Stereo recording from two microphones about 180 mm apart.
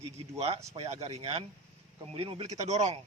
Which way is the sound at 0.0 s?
35° right (ahead or behind).